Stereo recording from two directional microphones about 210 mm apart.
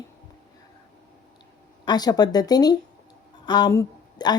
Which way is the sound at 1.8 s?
20° left (ahead or behind).